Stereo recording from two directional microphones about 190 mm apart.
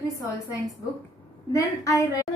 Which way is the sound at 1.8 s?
15° left (ahead or behind).